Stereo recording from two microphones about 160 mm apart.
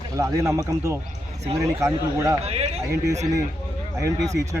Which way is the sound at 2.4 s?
40° right (ahead or behind).